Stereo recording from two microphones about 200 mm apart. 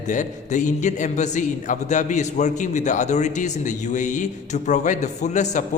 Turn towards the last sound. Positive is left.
turn(degrees=35)  # may be behind; listen again after turning